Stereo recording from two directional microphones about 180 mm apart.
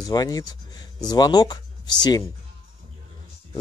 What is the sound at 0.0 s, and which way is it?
Speech, 20° left (ahead or behind).